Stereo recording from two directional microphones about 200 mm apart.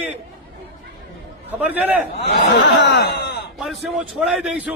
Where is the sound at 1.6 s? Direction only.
10° right (ahead or behind).